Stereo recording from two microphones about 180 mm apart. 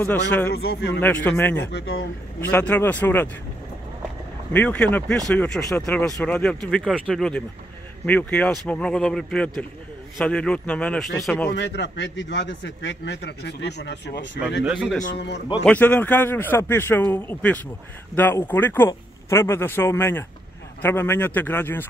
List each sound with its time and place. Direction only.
0.7 s a man's voice: 65° left (ahead or behind)
1.0 s speech: 10° left (ahead or behind)
1.7 s speech: 85° left
2.5 s speech: 10° left (ahead or behind)
4.5 s speech: 10° left (ahead or behind)
11.5 s a man's voice: 75° left (ahead or behind)
15.6 s speech: 10° left (ahead or behind)